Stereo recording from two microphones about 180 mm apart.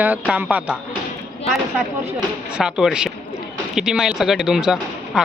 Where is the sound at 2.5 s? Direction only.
5° right (ahead or behind).